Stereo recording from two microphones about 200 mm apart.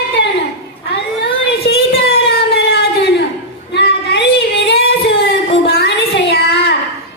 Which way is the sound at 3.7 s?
60° left (ahead or behind).